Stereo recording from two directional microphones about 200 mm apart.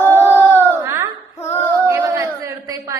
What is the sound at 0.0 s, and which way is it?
Baby cry, 10° left (ahead or behind).